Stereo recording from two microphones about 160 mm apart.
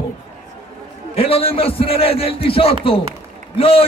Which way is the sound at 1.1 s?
35° left (ahead or behind).